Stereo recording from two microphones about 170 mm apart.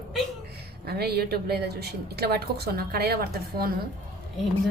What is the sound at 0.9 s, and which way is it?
A woman's voice, 70° right (ahead or behind).